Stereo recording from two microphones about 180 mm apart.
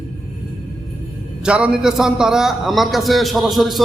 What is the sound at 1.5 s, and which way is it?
A man's voice, 5° right (ahead or behind).